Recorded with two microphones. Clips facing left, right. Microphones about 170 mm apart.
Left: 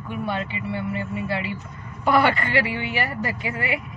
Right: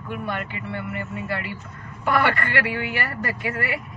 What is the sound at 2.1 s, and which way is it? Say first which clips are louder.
Speech: left 2 dB; 20° left (ahead or behind).